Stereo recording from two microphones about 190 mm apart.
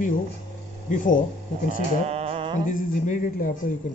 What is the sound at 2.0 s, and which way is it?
Music, 30° right (ahead or behind).